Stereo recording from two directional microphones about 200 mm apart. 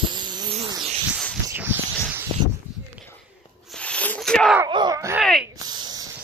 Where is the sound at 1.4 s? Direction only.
10° right (ahead or behind).